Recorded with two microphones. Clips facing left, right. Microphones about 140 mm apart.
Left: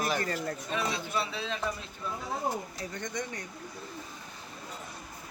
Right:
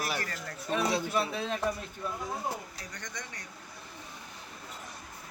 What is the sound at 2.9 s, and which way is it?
Speech, 20° left (ahead or behind).